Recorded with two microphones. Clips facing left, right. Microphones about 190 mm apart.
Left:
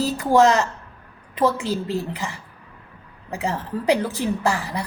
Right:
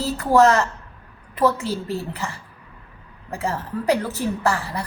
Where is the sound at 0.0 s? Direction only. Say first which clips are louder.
Even; 15° left (ahead or behind).